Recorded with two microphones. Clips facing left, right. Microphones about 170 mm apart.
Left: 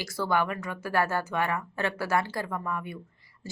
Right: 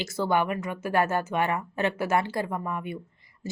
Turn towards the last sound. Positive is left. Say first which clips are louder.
# right 5 dB
turn(degrees=-20)  # may be behind; listen again after turning